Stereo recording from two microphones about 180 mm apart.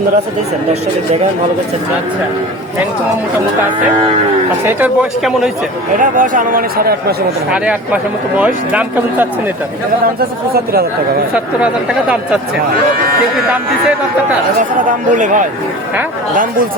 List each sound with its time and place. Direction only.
4.6 s speech: 5° right (ahead or behind)
6.0 s speech: 45° right (ahead or behind)
7.5 s speech: 5° right (ahead or behind)
10.2 s speech: 55° right (ahead or behind)
11.3 s speech: 5° right (ahead or behind)
14.6 s speech: 45° right (ahead or behind)